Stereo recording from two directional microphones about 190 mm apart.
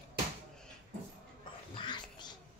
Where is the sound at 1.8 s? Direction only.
25° left (ahead or behind).